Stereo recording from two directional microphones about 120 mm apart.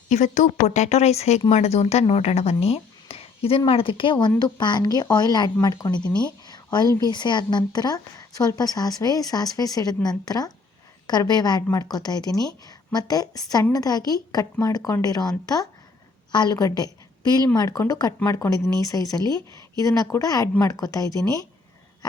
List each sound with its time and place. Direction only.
0.1 s a woman's voice: 85° left; by 6.0 s 35° left (ahead or behind)
6.5 s a sound: 35° left (ahead or behind)
6.9 s a woman's voice: 35° left (ahead or behind)
16.3 s a woman's voice: 35° left (ahead or behind)